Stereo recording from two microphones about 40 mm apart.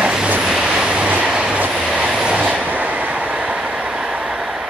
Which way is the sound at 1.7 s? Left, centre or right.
Centre.